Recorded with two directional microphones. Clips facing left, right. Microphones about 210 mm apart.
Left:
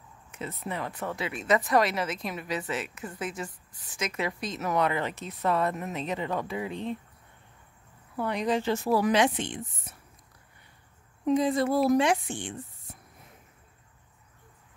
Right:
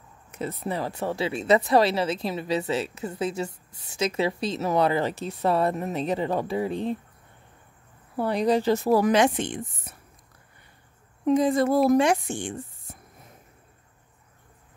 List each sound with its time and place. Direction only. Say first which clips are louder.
0.3 s speech: right 5 dB; 35° right (ahead or behind)
8.2 s speech: right 5 dB; 35° right (ahead or behind)
11.2 s a woman's voice: right 4 dB; 45° right (ahead or behind)